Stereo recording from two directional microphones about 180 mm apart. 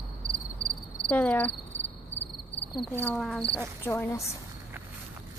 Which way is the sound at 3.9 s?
15° left (ahead or behind).